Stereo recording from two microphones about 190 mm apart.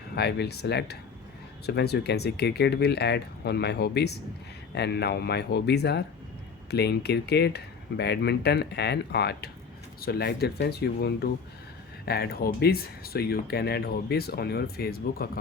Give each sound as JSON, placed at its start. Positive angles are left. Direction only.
{"t": 0.2, "sound": "speech", "side_deg": 60}